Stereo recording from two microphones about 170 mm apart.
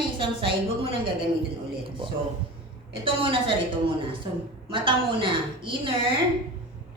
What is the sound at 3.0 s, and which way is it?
Speech, 30° right (ahead or behind).